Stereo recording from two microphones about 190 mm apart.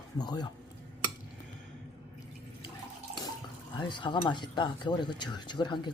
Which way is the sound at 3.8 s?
25° left (ahead or behind).